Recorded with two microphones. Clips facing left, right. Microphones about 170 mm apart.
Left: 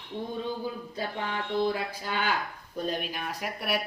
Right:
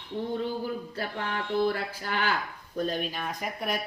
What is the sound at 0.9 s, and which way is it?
Speech, 15° left (ahead or behind).